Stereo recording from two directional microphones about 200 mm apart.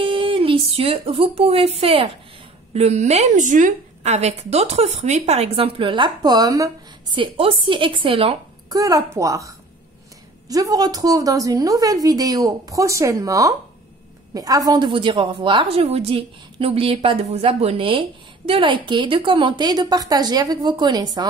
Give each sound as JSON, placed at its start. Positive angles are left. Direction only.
{"t": 0.0, "sound": "a woman's voice", "side_deg": -25}